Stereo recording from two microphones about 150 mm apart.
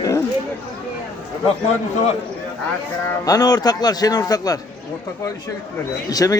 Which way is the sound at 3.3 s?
25° left (ahead or behind).